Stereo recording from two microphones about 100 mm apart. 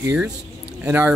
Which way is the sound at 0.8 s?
15° right (ahead or behind).